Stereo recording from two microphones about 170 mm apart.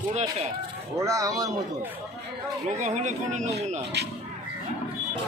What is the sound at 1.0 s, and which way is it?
Speech, 20° right (ahead or behind).